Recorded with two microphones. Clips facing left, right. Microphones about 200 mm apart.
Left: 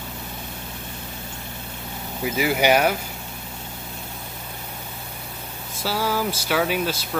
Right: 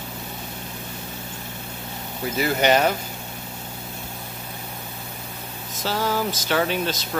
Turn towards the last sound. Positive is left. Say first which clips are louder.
# even
turn(degrees=10)  # may be behind; listen again after turning